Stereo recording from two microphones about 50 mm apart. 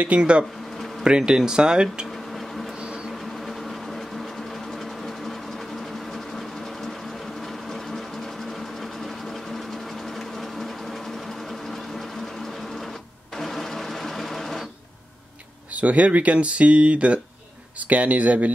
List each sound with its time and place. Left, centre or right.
0.0 s speech: right
2.3 s a sound: centre
2.8 s vehicle: centre
3.1 s a sound: centre
7.4 s sewing machine: centre
13.4 s printer: centre
15.7 s speech: right